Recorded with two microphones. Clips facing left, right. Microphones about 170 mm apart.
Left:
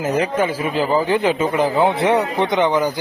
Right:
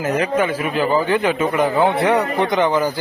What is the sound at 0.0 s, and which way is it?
A man's voice, 30° left (ahead or behind).